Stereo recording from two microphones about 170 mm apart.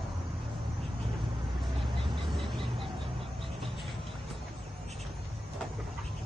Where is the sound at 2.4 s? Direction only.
30° right (ahead or behind).